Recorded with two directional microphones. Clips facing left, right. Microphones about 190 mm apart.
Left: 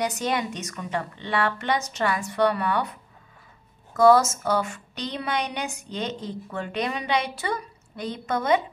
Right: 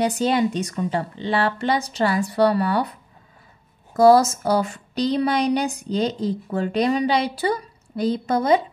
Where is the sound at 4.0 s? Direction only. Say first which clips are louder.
Right 3 dB; 35° right (ahead or behind).